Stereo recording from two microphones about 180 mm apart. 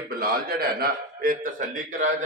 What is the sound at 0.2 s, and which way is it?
A man's voice, 55° right (ahead or behind).